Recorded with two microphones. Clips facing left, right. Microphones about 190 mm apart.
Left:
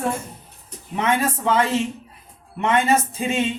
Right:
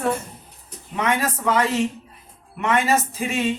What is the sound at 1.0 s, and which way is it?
Speech, 25° left (ahead or behind).